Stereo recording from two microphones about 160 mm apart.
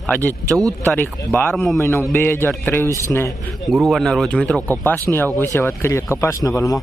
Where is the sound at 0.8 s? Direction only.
10° left (ahead or behind).